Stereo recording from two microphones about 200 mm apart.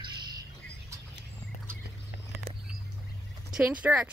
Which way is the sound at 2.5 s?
30° right (ahead or behind).